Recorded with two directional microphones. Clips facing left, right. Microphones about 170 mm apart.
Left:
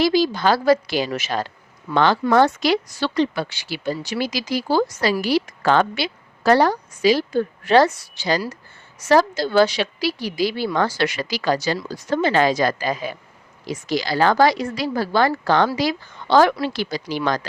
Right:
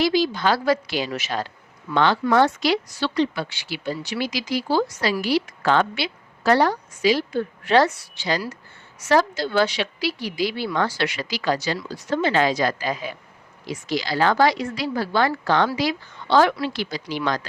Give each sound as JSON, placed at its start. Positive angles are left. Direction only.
{"t": 0.0, "sound": "a woman's voice", "side_deg": 40}